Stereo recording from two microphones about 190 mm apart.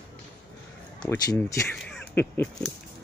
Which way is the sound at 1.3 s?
15° left (ahead or behind).